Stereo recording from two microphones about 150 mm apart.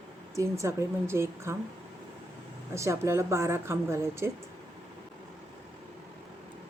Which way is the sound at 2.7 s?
20° right (ahead or behind).